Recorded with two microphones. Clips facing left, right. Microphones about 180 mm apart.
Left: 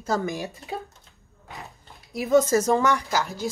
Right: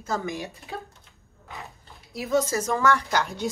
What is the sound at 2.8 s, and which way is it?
Speech, 20° left (ahead or behind).